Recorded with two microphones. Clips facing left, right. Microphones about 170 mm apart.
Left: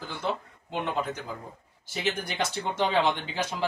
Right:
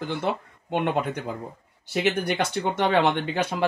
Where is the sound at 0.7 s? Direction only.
60° right (ahead or behind).